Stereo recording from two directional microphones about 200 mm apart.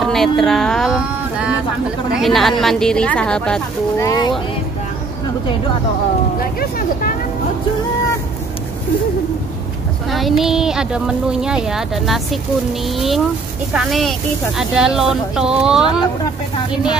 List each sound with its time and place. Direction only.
0.0 s speech: centre (ahead or behind)
4.0 s speech: 20° left (ahead or behind)
10.0 s speech: centre (ahead or behind)